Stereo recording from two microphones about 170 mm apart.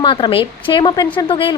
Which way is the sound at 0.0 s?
30° left (ahead or behind).